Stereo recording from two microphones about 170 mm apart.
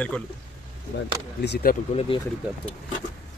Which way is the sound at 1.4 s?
80° left.